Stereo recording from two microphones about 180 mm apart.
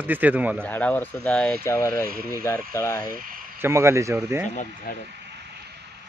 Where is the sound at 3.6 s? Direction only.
15° right (ahead or behind).